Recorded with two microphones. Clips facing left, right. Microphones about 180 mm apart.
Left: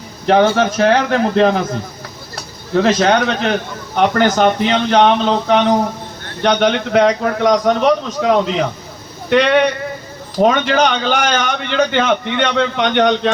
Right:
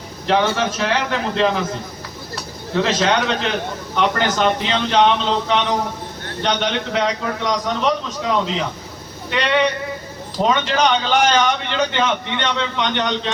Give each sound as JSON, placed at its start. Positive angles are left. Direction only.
{"t": 0.3, "sound": "a man's voice", "side_deg": 50}